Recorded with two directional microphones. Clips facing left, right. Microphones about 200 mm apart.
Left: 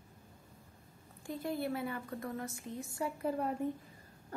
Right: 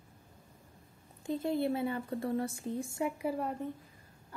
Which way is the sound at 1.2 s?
25° right (ahead or behind).